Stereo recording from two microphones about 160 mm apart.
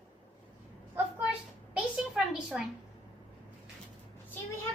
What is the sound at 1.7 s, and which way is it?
Speech, 5° right (ahead or behind).